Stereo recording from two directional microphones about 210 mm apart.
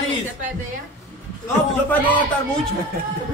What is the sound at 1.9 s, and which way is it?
Speech, 5° left (ahead or behind).